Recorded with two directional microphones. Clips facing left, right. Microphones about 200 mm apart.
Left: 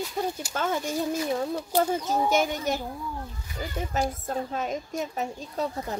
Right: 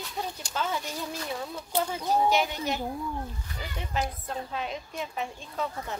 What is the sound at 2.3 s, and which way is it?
Speech, 45° left (ahead or behind).